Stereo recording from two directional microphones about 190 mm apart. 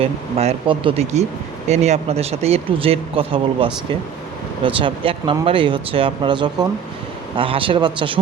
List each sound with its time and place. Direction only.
0.0 s speech: 30° right (ahead or behind)